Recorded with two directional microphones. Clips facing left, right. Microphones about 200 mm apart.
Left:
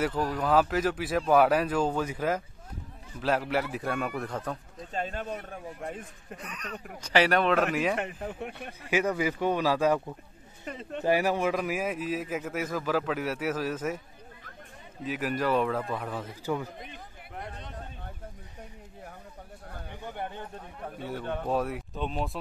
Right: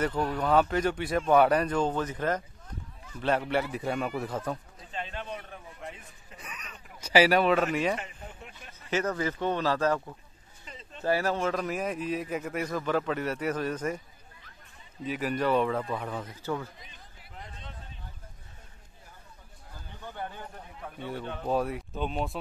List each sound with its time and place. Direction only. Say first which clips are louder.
0.0 s a man's voice: even; 5° left (ahead or behind)
4.9 s a sound: left 4 dB; 45° left (ahead or behind)
6.3 s a man's voice: left 7 dB; 5° right (ahead or behind)
8.0 s speech: left 9 dB; 60° left (ahead or behind)
8.9 s speech: left 2 dB; 10° left (ahead or behind)
10.6 s speech: left 9 dB; 60° left (ahead or behind)
11.1 s a man's voice: left 2 dB; 15° left (ahead or behind)
15.0 s a man's voice: even; centre (ahead or behind)
16.4 s speech: left 2 dB; 15° left (ahead or behind)
16.7 s a sound: left 9 dB; 55° left (ahead or behind)
19.7 s a sound: left 5 dB; 65° left (ahead or behind)
20.2 s a sound: left 1 dB; 20° left (ahead or behind)
21.0 s a man's voice: left 2 dB; centre (ahead or behind)